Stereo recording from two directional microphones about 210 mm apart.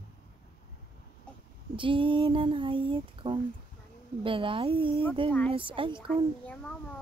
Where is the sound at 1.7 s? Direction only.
25° right (ahead or behind).